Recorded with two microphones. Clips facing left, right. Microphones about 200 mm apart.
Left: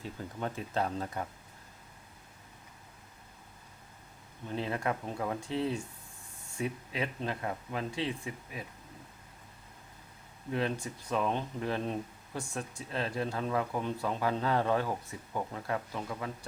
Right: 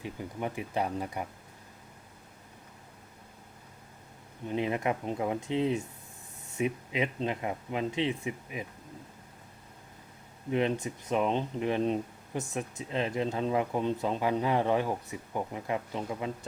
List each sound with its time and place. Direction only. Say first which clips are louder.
0.0 s speech: right 2 dB; 15° right (ahead or behind)
4.4 s speech: right 4 dB; 15° right (ahead or behind)
10.5 s speech: right 4 dB; 20° right (ahead or behind)